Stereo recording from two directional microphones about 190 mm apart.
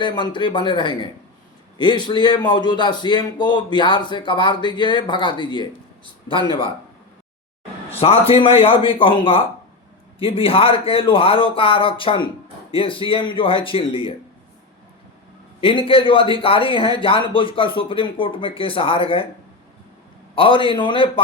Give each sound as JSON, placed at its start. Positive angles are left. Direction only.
{"t": 0.0, "sound": "a man's voice", "side_deg": 25}
{"t": 7.9, "sound": "a man's voice", "side_deg": 30}
{"t": 15.6, "sound": "a man's voice", "side_deg": 30}
{"t": 20.3, "sound": "a man's voice", "side_deg": 30}